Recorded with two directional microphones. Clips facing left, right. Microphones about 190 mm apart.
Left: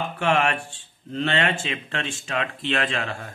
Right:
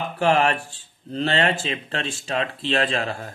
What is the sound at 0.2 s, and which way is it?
Speech, 35° right (ahead or behind).